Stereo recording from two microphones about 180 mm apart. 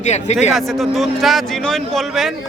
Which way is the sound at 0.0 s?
40° left (ahead or behind).